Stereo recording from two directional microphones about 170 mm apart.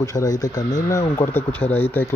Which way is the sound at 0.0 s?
20° left (ahead or behind).